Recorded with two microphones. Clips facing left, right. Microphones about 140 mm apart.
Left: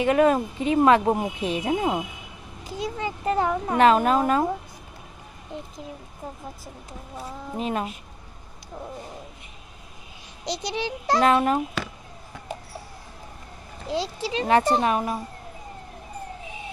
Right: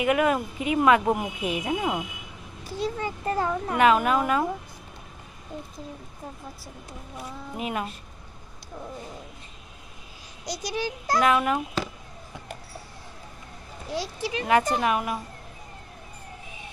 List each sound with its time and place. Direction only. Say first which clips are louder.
0.0 s a child's voice: left 3 dB; 30° left (ahead or behind)
2.6 s a child's voice: even; 15° left (ahead or behind)
3.7 s speech: left 2 dB; 35° left (ahead or behind)
7.2 s speech: left 3 dB; 30° left (ahead or behind)
10.4 s a child's voice: left 2 dB; 25° left (ahead or behind)
13.8 s a child's voice: left 3 dB; 25° left (ahead or behind)